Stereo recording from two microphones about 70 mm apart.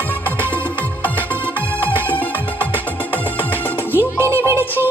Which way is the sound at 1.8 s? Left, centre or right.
Left.